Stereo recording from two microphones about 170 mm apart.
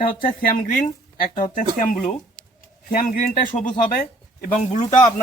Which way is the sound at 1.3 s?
50° left (ahead or behind).